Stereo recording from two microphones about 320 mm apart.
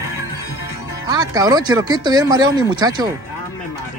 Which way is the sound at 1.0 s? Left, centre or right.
Centre.